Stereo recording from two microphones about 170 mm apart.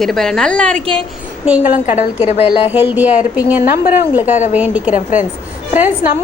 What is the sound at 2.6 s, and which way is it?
Speech, 10° right (ahead or behind).